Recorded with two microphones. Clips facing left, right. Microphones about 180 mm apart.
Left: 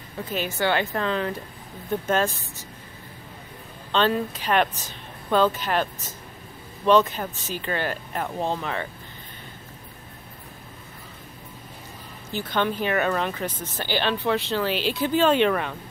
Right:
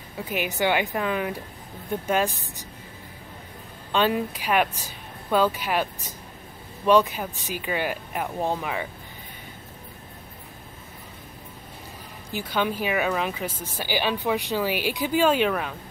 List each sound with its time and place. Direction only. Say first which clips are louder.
0.2 s speech: even; 15° right (ahead or behind)
3.9 s speech: even; 10° right (ahead or behind)
12.3 s speech: left 1 dB; 10° right (ahead or behind)